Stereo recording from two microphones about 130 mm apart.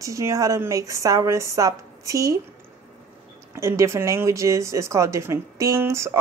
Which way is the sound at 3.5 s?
20° right (ahead or behind).